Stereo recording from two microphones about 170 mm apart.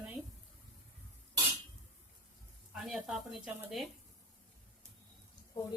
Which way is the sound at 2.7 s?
Centre (ahead or behind).